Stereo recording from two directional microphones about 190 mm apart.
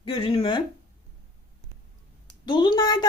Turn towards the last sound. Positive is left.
turn(degrees=25)  # may be behind; listen again after turning